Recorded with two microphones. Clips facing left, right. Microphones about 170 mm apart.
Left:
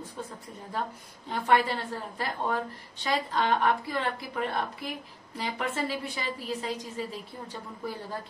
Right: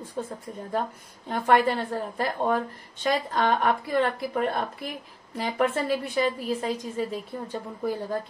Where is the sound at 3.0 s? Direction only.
50° right (ahead or behind).